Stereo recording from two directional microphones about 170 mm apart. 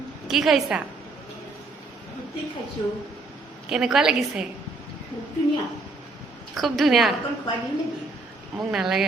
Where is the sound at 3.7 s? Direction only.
5° right (ahead or behind).